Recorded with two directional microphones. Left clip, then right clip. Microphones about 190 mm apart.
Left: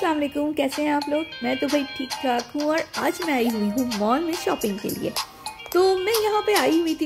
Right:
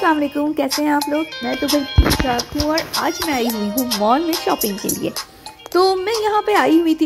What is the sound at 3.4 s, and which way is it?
Speech, 45° right (ahead or behind).